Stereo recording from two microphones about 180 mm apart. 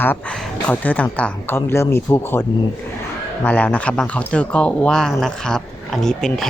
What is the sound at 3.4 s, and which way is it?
Speech, 10° left (ahead or behind).